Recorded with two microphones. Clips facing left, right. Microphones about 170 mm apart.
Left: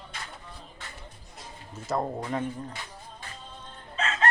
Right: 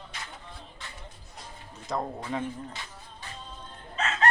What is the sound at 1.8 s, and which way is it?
Speech, 5° left (ahead or behind).